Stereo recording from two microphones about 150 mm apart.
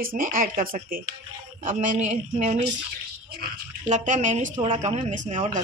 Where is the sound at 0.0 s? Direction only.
70° right (ahead or behind).